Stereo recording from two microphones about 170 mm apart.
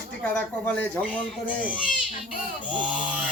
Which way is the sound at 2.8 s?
5° right (ahead or behind).